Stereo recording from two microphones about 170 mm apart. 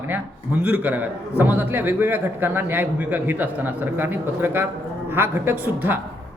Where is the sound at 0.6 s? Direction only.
10° right (ahead or behind).